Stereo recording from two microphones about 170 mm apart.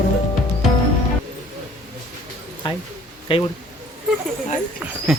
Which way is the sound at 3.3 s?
30° left (ahead or behind).